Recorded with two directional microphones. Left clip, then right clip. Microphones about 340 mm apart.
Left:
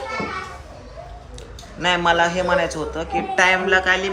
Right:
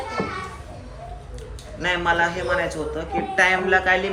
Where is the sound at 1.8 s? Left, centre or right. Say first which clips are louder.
Left 3 dB; centre.